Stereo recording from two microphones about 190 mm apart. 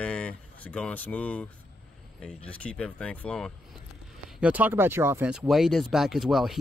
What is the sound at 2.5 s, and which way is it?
Speech, 5° left (ahead or behind).